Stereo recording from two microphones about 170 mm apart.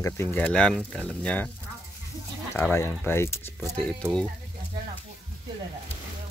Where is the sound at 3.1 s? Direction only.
15° left (ahead or behind).